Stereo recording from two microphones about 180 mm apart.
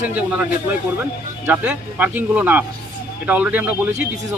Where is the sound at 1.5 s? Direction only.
10° right (ahead or behind).